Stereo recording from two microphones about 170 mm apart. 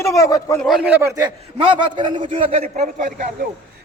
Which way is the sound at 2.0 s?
30° right (ahead or behind).